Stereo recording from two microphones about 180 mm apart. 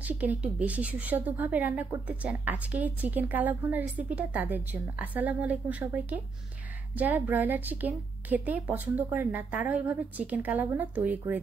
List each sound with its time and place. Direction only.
0.0 s a woman's voice: 10° right (ahead or behind)